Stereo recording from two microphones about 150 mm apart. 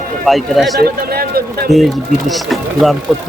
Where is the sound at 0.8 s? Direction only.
90° right.